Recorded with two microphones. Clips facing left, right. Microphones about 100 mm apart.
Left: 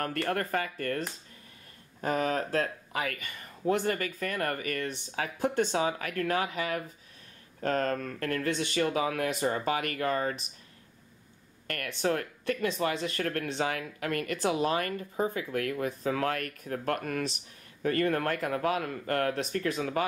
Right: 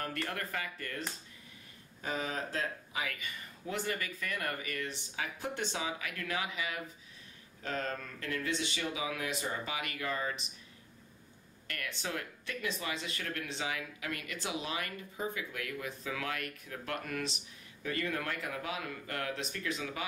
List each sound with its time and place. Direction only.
0.0 s speech: 50° left (ahead or behind)
11.6 s speech: 50° left (ahead or behind)